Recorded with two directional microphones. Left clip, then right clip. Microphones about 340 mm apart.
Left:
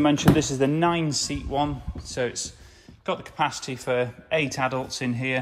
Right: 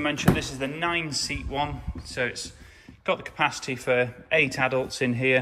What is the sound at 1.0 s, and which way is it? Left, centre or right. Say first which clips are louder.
Speech: left 2 dB; left.